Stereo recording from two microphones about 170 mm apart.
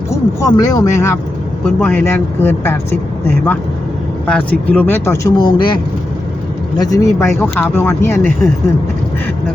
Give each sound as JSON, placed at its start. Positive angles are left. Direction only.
{"t": 0.1, "sound": "speech", "side_deg": 20}
{"t": 4.3, "sound": "speech", "side_deg": 10}
{"t": 6.7, "sound": "speech", "side_deg": 20}